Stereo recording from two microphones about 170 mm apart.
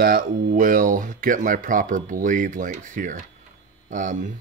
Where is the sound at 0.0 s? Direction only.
60° right (ahead or behind).